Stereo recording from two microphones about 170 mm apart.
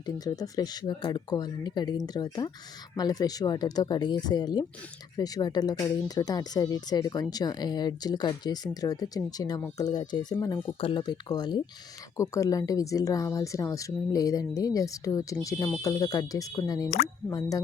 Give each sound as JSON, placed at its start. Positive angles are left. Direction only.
{"t": 0.0, "sound": "speech", "side_deg": 25}